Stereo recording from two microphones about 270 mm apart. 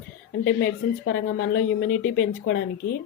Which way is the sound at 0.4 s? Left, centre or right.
Left.